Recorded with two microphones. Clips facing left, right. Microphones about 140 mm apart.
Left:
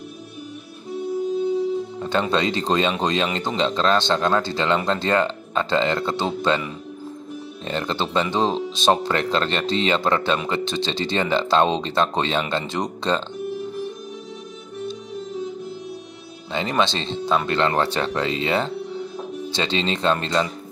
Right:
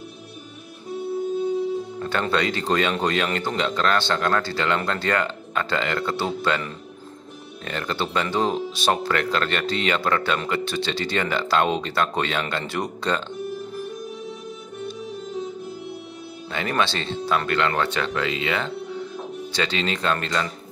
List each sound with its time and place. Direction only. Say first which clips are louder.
2.0 s speech: left 2 dB; 20° left (ahead or behind)
7.6 s speech: left 2 dB; 25° left (ahead or behind)
16.5 s speech: left 2 dB; 20° left (ahead or behind)